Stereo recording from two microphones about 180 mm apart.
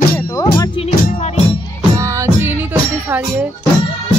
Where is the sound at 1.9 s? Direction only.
15° right (ahead or behind).